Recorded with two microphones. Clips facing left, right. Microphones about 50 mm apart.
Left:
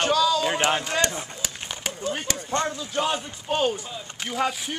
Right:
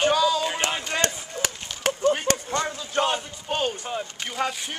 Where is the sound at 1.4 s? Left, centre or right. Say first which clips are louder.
Right 6 dB; right.